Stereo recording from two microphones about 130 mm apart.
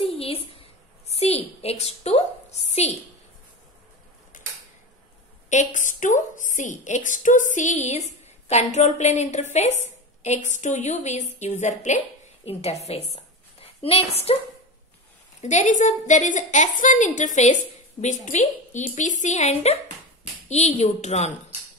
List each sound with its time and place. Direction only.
0.0 s a sound: 45° left (ahead or behind)
4.3 s creak: 80° left
5.5 s a woman's voice: 70° left (ahead or behind)
12.4 s a woman's voice: 55° left (ahead or behind)
13.1 s a sound: 50° left (ahead or behind)
15.4 s a woman's voice: 65° left (ahead or behind)